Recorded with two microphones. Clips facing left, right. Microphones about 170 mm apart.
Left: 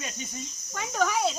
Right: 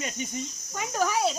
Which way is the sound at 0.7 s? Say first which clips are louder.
Even; 5° right (ahead or behind).